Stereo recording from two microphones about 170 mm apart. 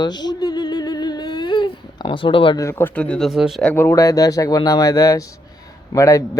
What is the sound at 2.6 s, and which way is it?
Speech, 15° left (ahead or behind).